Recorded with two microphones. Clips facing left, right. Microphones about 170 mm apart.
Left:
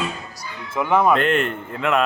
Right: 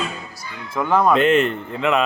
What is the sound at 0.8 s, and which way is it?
Speech, 10° left (ahead or behind).